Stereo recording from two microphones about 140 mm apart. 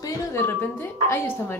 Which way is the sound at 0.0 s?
20° left (ahead or behind).